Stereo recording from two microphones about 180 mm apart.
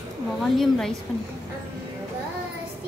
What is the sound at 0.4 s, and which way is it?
Speech, centre (ahead or behind).